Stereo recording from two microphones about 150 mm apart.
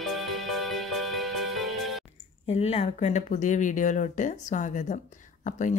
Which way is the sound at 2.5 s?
40° left (ahead or behind).